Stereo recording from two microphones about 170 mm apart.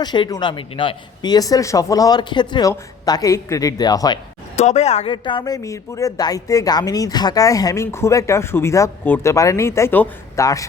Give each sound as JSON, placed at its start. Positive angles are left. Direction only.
{"t": 0.0, "sound": "speech", "side_deg": 25}
{"t": 4.5, "sound": "speech", "side_deg": 40}